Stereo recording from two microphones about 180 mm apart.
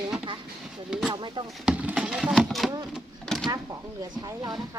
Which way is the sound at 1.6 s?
5° right (ahead or behind).